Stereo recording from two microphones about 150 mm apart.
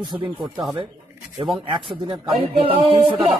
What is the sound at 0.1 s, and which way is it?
Speech, 30° right (ahead or behind).